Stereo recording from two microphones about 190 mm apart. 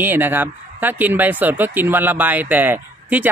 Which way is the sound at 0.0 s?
10° right (ahead or behind).